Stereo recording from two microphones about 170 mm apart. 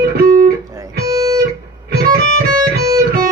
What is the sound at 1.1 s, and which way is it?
Guitar, 20° right (ahead or behind).